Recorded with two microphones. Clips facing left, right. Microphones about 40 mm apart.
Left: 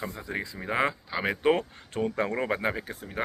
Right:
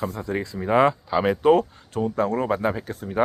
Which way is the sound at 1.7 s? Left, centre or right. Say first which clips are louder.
Right 4 dB; left.